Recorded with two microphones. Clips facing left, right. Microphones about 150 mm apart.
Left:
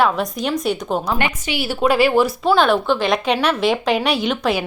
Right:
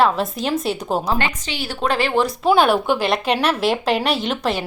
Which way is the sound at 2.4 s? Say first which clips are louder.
Even; 10° right (ahead or behind).